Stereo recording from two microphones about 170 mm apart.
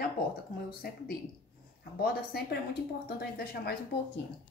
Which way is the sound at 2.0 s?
65° left (ahead or behind).